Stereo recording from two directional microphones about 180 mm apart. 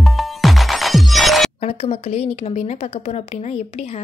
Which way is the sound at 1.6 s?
35° left (ahead or behind).